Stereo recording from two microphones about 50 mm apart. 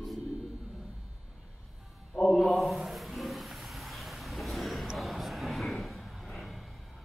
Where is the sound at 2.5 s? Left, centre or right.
Centre.